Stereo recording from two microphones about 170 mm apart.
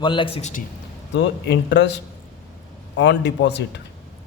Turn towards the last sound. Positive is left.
turn(degrees=90)